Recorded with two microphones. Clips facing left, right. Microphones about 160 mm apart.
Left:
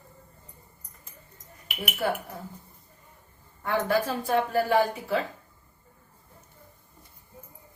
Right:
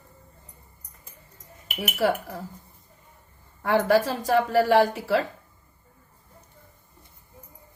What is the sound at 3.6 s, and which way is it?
A woman's voice, 85° right.